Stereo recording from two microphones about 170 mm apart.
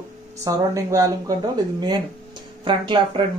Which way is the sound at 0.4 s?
20° right (ahead or behind).